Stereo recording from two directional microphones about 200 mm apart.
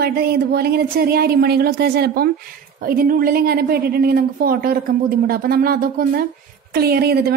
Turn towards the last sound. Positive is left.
turn(degrees=-50)  # may be behind; listen again after turning